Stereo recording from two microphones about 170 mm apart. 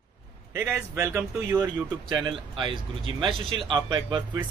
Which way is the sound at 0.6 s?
15° right (ahead or behind).